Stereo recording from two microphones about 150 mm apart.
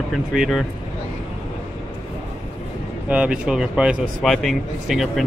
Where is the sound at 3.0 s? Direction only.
10° right (ahead or behind).